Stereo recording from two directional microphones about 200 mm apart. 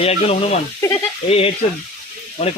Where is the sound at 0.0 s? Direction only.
30° left (ahead or behind).